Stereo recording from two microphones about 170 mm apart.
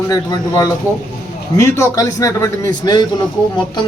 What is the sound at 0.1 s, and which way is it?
A man's voice, 25° left (ahead or behind).